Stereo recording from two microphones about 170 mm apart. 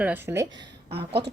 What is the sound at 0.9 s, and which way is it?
Speech, 35° right (ahead or behind).